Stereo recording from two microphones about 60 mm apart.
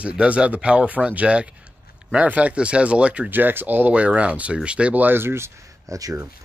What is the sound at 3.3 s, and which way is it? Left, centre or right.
Speech, right.